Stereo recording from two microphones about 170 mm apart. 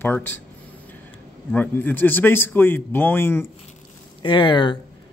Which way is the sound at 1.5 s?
10° left (ahead or behind).